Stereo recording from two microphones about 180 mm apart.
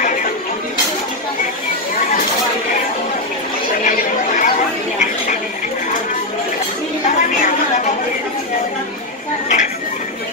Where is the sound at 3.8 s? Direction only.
45° left (ahead or behind).